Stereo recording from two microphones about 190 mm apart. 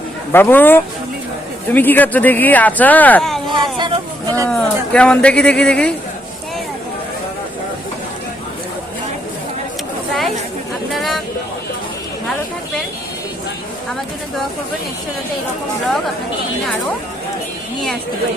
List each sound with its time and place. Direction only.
0.3 s speech: 10° left (ahead or behind)
3.5 s a sound: 25° right (ahead or behind)
4.4 s speech: 5° left (ahead or behind)
10.9 s vehicle: centre (ahead or behind)